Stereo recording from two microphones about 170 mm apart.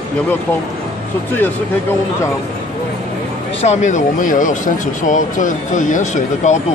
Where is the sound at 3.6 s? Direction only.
45° left (ahead or behind).